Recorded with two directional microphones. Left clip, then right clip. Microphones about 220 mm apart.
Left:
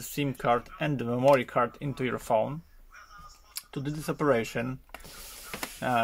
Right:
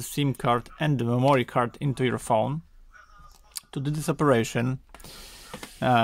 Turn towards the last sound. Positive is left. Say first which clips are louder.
# right 6 dB
turn(degrees=-45)  # may be behind; listen again after turning